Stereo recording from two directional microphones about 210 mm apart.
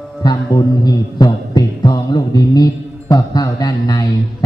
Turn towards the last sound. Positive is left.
turn(degrees=20)  # may be behind; listen again after turning